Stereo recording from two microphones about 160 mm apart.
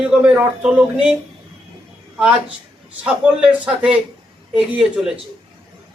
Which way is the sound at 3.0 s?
5° right (ahead or behind).